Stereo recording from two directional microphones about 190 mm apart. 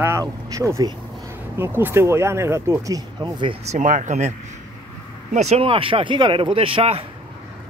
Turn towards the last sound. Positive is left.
turn(degrees=-30)  # may be behind; listen again after turning